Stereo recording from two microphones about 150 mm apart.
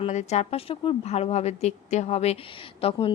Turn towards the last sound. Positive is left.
turn(degrees=40)  # may be behind; listen again after turning